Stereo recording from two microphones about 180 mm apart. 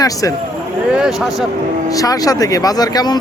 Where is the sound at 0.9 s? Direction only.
5° right (ahead or behind).